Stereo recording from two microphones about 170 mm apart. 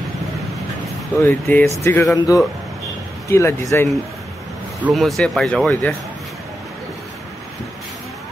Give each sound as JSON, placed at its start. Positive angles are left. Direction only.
{"t": 1.2, "sound": "speech", "side_deg": 10}
{"t": 4.8, "sound": "speech", "side_deg": 0}